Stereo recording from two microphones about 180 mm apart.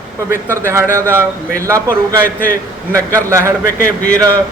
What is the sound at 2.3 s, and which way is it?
Speech, 50° left (ahead or behind).